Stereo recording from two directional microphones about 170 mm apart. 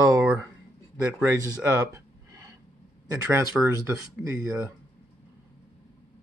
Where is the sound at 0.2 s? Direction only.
10° right (ahead or behind).